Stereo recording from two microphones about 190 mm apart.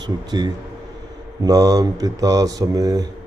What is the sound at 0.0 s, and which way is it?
Speech, 20° right (ahead or behind).